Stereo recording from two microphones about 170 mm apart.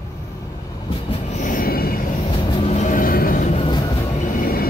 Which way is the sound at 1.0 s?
35° left (ahead or behind).